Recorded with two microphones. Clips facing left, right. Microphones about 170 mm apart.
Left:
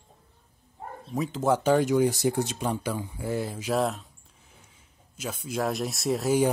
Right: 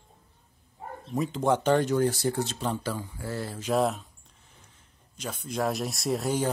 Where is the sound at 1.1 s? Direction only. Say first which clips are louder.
Even; centre (ahead or behind).